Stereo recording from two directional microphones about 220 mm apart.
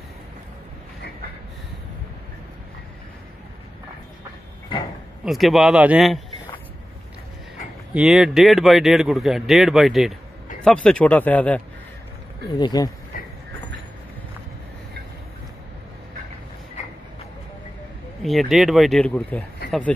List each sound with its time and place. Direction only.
5.2 s speech: centre (ahead or behind)
7.9 s speech: 5° right (ahead or behind)
12.5 s speech: 15° left (ahead or behind)
13.1 s train: 40° left (ahead or behind)
16.8 s vehicle: 30° left (ahead or behind)
18.2 s speech: centre (ahead or behind)